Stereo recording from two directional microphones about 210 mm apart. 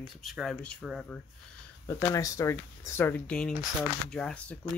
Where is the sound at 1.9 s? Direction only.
15° left (ahead or behind).